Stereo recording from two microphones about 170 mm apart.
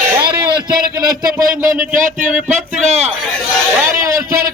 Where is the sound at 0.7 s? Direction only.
60° right (ahead or behind); by 3.1 s 40° right (ahead or behind).